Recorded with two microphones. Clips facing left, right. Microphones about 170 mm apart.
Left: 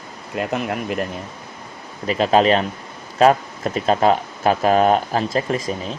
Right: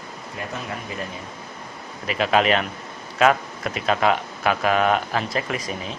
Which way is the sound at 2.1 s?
35° left (ahead or behind).